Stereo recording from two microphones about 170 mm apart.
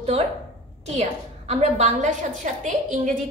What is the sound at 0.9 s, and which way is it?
A woman's voice, 40° right (ahead or behind).